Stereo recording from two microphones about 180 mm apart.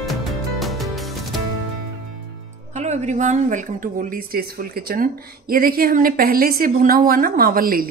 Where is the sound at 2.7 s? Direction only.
40° right (ahead or behind).